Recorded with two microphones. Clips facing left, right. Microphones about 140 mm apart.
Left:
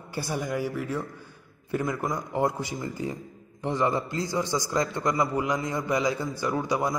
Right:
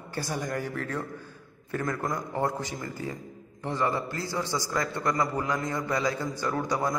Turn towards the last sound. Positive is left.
turn(degrees=15)  # may be behind; listen again after turning